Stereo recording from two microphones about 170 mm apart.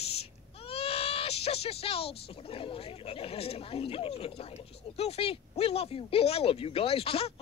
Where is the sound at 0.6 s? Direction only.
35° left (ahead or behind).